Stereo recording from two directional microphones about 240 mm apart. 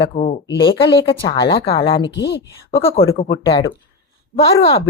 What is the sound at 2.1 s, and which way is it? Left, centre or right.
Speech, left.